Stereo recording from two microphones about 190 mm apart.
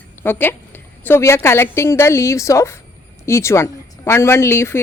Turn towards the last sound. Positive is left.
turn(degrees=15)  # may be behind; listen again after turning